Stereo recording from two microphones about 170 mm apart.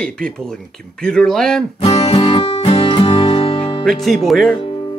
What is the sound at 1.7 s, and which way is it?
Music, 35° left (ahead or behind).